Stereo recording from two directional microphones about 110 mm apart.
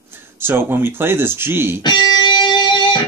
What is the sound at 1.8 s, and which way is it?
Music, 45° left (ahead or behind).